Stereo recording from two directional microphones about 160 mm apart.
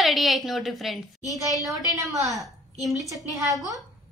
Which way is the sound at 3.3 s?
20° right (ahead or behind).